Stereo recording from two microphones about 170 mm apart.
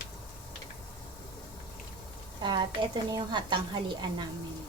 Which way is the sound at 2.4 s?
25° right (ahead or behind).